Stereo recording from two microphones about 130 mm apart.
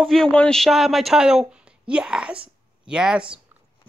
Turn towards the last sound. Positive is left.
turn(degrees=-5)  # may be behind; listen again after turning